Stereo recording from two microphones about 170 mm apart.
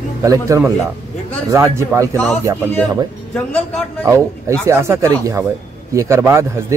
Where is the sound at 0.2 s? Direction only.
20° right (ahead or behind).